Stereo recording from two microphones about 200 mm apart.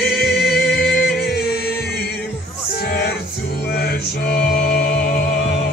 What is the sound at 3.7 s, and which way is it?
Mantra, 55° left (ahead or behind).